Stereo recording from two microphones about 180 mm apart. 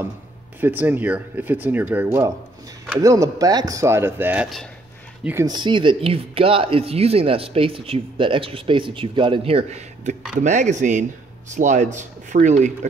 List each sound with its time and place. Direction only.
0.6 s speech: 10° right (ahead or behind); by 12.7 s 40° right (ahead or behind)